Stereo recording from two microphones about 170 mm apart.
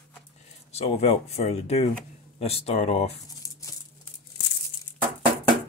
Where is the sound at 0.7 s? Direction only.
35° left (ahead or behind).